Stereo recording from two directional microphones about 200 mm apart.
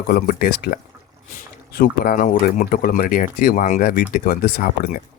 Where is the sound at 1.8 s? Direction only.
45° left (ahead or behind).